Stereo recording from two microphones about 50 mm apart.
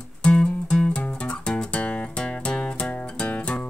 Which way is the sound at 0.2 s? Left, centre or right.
Centre.